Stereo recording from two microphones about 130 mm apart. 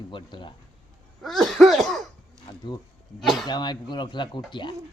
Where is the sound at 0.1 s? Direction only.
40° left (ahead or behind).